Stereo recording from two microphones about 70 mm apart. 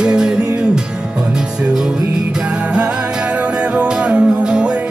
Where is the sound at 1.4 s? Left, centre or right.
Centre.